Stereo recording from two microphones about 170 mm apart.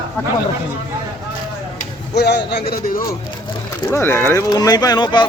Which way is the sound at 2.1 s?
80° left.